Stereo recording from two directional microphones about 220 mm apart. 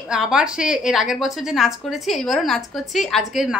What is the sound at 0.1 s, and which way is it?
A woman's voice, 5° right (ahead or behind).